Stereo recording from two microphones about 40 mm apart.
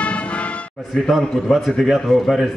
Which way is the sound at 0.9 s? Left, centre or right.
Centre.